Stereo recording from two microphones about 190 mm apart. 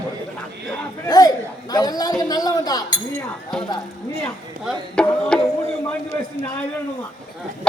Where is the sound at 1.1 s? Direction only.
20° left (ahead or behind).